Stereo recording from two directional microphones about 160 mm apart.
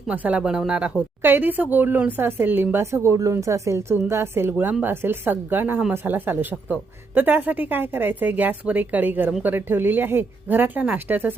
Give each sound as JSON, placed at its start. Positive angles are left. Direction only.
{"t": 0.1, "sound": "speech", "side_deg": -10}